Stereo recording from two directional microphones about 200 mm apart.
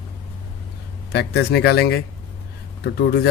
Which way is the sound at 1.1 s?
55° left (ahead or behind).